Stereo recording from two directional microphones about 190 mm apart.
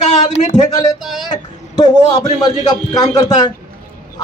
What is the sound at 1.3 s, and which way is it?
A man's voice, 20° left (ahead or behind).